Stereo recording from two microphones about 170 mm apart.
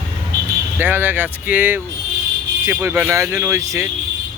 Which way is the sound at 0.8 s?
10° right (ahead or behind).